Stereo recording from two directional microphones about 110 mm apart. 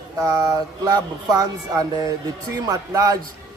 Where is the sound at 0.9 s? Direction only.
35° right (ahead or behind).